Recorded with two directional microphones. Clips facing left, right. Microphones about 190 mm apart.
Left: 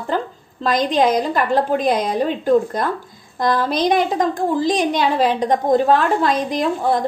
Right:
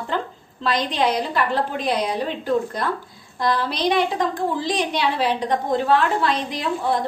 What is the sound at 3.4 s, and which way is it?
A woman's voice, 45° left (ahead or behind).